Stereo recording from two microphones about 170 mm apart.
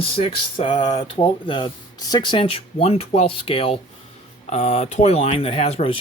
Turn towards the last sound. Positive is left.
turn(degrees=35)  # may be behind; listen again after turning